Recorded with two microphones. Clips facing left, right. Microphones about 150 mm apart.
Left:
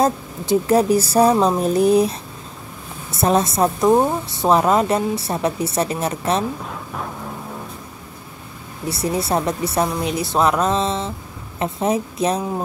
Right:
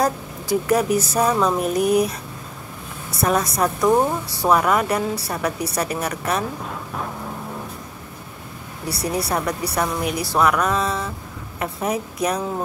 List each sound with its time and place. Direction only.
0.0 s a woman's voice: 25° left (ahead or behind)
6.6 s vehicle: centre (ahead or behind)
8.8 s a woman's voice: 25° left (ahead or behind)